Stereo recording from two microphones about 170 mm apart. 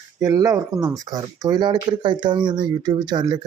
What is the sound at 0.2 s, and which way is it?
Speech, 20° right (ahead or behind).